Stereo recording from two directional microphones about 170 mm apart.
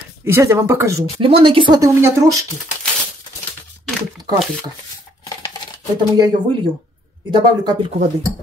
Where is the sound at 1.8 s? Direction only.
15° right (ahead or behind).